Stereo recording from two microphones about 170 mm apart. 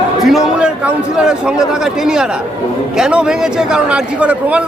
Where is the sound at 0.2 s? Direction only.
Centre (ahead or behind).